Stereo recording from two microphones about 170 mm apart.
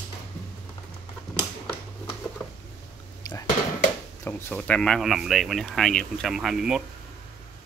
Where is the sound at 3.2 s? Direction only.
20° left (ahead or behind).